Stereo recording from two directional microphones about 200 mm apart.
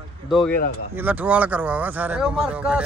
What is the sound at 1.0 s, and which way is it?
Speech, 10° right (ahead or behind).